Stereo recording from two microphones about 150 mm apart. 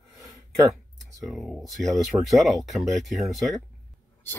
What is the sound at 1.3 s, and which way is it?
Speech, centre (ahead or behind).